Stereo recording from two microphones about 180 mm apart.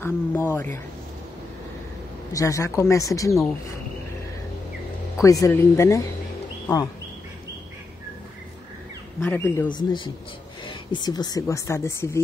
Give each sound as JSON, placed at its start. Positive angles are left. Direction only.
{"t": 0.0, "sound": "speech", "side_deg": 10}
{"t": 2.3, "sound": "speech", "side_deg": 15}
{"t": 5.2, "sound": "speech", "side_deg": 20}
{"t": 9.2, "sound": "speech", "side_deg": 10}
{"t": 9.7, "sound": "speech", "side_deg": 25}